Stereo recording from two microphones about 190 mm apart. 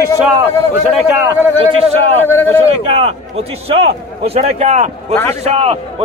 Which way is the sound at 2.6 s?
30° right (ahead or behind).